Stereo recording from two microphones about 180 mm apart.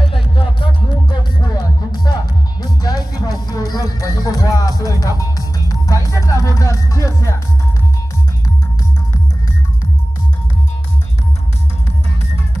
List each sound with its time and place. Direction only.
0.0 s music: 30° left (ahead or behind)